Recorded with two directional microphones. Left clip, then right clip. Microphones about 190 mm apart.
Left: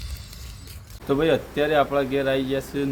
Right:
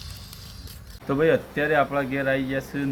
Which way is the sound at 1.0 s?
15° left (ahead or behind).